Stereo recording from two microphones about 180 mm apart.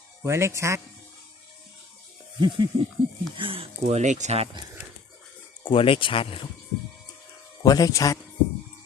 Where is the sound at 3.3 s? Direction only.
30° right (ahead or behind).